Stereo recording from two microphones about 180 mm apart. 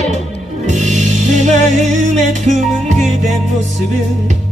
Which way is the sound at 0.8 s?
40° right (ahead or behind).